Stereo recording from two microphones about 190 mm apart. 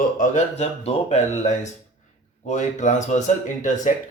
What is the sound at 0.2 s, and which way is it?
Speech, 40° left (ahead or behind).